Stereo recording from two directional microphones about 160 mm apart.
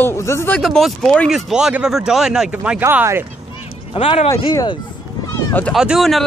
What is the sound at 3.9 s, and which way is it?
Speech, 35° left (ahead or behind).